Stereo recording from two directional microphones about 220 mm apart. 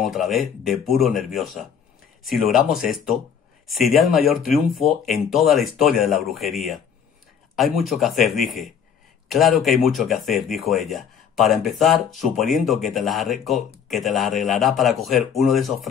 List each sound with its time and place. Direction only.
0.0 s speech: centre (ahead or behind)
2.2 s speech: centre (ahead or behind)